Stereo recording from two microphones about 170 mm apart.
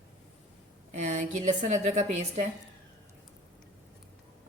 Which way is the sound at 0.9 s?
45° right (ahead or behind).